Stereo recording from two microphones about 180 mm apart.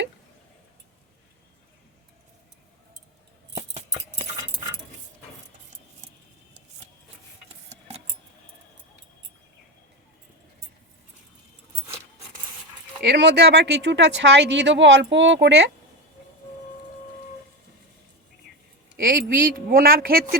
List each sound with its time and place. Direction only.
7.7 s keys jangling: 35° right (ahead or behind)
13.0 s speech: 70° right (ahead or behind)
18.9 s speech: 55° right (ahead or behind)